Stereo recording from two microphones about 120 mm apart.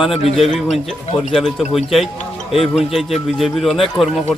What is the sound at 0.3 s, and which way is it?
A man's voice, centre (ahead or behind).